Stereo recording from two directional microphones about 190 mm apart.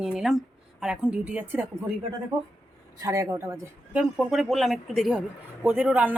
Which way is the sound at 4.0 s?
Centre (ahead or behind).